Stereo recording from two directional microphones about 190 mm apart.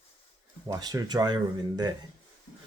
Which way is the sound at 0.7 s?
20° right (ahead or behind).